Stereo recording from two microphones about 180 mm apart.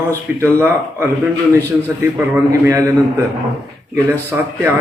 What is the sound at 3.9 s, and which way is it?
Speech, 15° right (ahead or behind).